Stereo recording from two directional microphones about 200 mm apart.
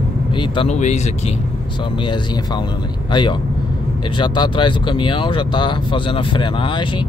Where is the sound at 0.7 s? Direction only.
35° left (ahead or behind).